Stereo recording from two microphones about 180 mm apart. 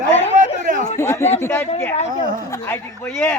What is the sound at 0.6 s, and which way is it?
Speech, 45° right (ahead or behind).